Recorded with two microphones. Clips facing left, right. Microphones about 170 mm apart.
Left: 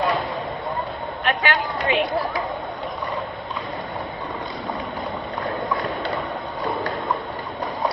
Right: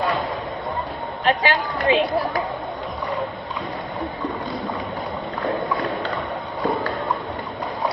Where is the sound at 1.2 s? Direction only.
30° right (ahead or behind).